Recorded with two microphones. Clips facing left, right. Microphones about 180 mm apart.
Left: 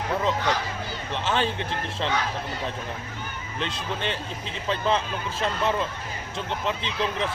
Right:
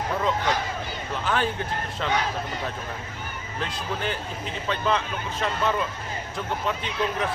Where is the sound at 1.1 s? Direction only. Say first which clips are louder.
Even; 25° left (ahead or behind).